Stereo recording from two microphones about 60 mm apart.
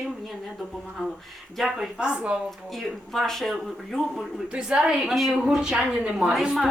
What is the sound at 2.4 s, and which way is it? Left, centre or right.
A woman's voice, centre.